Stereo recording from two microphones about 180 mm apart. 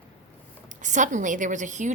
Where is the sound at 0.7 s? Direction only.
45° right (ahead or behind).